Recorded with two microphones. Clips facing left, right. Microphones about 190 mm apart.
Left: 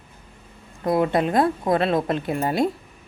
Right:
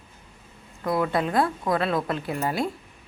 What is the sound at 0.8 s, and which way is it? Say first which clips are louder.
Speech: left 4 dB; 30° left (ahead or behind).